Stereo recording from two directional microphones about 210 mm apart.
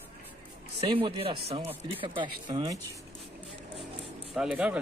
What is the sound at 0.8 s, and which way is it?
Speech, 25° right (ahead or behind).